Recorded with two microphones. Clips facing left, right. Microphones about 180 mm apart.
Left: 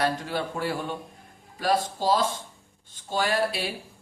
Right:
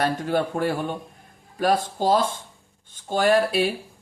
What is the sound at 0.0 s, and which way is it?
Speech, 50° right (ahead or behind).